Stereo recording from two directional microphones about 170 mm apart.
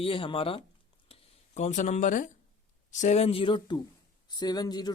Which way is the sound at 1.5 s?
45° left (ahead or behind).